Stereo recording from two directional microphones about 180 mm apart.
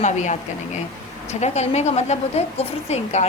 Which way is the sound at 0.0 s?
40° left (ahead or behind).